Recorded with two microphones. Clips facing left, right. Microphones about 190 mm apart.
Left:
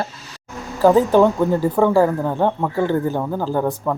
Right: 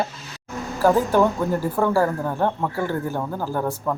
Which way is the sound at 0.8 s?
20° left (ahead or behind).